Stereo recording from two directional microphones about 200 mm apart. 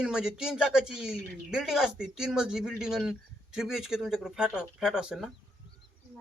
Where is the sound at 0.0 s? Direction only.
5° right (ahead or behind).